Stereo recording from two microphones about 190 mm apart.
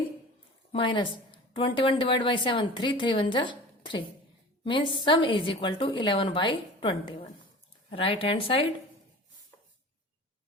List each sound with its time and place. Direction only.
0.7 s a woman's voice: 25° left (ahead or behind)